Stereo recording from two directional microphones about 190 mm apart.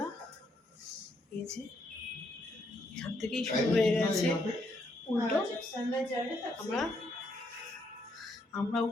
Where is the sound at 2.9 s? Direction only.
Centre (ahead or behind).